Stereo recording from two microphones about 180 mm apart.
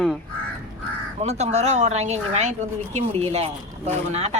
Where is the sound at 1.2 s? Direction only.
40° right (ahead or behind).